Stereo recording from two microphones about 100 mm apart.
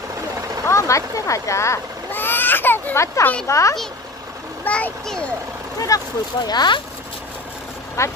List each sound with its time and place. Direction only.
0.7 s a child's voice: 30° left (ahead or behind)
4.6 s a child's voice: 15° left (ahead or behind)
5.9 s a child's voice: 35° left (ahead or behind)
8.0 s speech: 30° left (ahead or behind)